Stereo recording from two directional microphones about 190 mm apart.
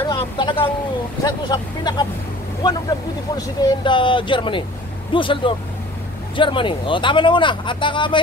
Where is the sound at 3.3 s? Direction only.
20° left (ahead or behind).